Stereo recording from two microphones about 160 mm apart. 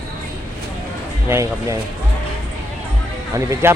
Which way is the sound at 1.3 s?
20° right (ahead or behind).